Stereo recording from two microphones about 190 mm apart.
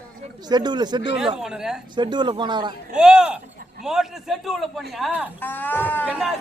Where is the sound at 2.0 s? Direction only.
25° right (ahead or behind).